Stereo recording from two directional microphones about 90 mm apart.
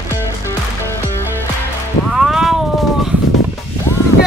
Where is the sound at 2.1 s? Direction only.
5° right (ahead or behind).